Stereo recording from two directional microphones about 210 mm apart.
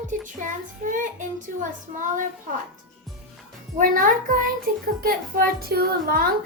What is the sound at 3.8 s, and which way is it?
A child's voice, 40° right (ahead or behind).